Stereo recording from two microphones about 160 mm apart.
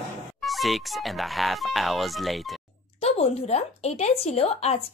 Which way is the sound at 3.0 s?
40° left (ahead or behind).